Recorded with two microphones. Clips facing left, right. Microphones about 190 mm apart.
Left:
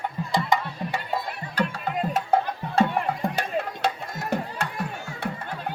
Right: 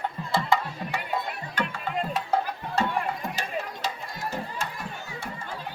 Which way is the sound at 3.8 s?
65° left (ahead or behind).